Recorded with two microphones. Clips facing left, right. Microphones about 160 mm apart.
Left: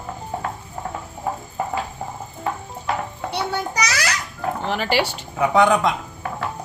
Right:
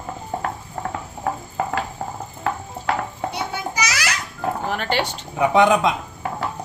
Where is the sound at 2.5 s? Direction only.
90° right.